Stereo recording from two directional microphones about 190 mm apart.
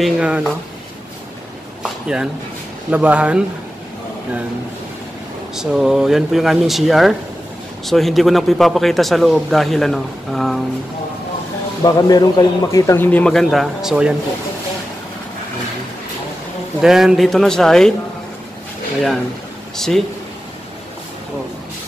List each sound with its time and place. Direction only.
0.0 s a man's voice: 5° right (ahead or behind)
1.8 s a sound: 5° right (ahead or behind)
2.9 s speech: 10° right (ahead or behind)
5.6 s a man's voice: 5° right (ahead or behind)
11.8 s a man's voice: 20° left (ahead or behind); by 14.1 s 5° right (ahead or behind)
16.8 s a man's voice: centre (ahead or behind)